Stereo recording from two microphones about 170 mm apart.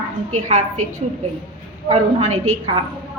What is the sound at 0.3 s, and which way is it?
Speech, 45° right (ahead or behind).